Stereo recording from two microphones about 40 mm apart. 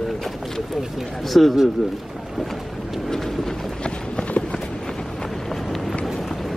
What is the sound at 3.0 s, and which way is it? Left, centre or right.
Vehicle, centre.